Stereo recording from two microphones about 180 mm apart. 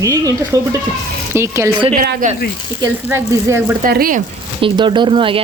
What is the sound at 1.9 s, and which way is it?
Speech, 50° right (ahead or behind).